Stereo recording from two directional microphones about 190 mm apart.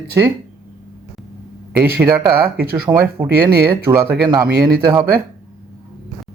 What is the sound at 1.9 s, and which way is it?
Speech, 15° right (ahead or behind).